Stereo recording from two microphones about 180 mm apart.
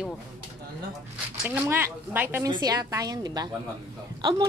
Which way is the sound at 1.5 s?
10° right (ahead or behind).